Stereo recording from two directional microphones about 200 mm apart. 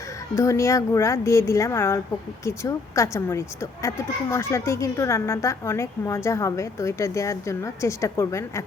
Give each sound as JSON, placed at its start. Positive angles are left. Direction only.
{"t": 0.3, "sound": "speech", "side_deg": 15}